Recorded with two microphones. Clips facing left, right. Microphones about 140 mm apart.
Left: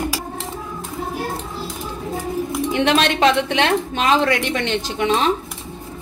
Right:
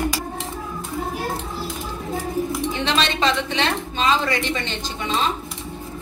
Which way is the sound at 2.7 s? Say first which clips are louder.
Left 9 dB; 60° left (ahead or behind).